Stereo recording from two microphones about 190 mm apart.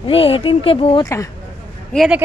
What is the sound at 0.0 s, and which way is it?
Speech, 30° left (ahead or behind).